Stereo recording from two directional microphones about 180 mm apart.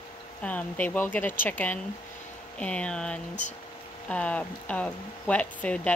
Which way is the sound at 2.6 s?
5° left (ahead or behind).